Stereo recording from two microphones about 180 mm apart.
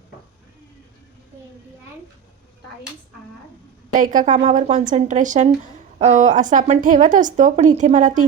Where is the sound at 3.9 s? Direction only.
45° right (ahead or behind).